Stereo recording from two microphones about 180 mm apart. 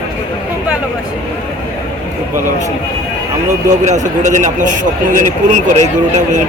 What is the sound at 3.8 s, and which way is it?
A man's voice, 40° right (ahead or behind).